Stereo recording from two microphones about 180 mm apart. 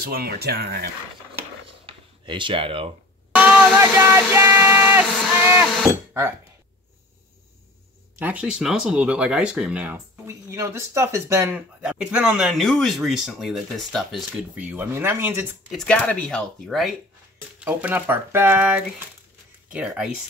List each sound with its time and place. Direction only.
0.0 s speech: 60° right (ahead or behind)
1.9 s a sound: 25° right (ahead or behind)
3.3 s a sound: 5° right (ahead or behind)
3.7 s speech: 15° right (ahead or behind)
4.3 s music: 15° right (ahead or behind)
5.2 s speech: 10° right (ahead or behind)
8.2 s speech: 10° right (ahead or behind)
15.7 s speech: 5° left (ahead or behind)